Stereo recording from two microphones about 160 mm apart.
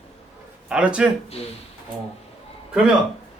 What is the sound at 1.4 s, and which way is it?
Speech, 40° left (ahead or behind).